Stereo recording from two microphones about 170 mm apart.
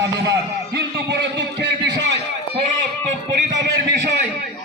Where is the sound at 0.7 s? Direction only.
90° right.